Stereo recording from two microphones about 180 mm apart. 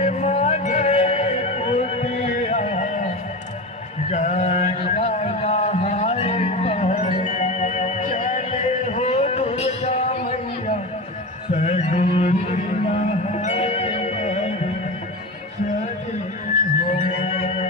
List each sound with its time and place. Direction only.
0.0 s music: 40° left (ahead or behind)
4.1 s mantra: 40° left (ahead or behind)
11.5 s a sound: 35° left (ahead or behind)
17.0 s music: 35° left (ahead or behind)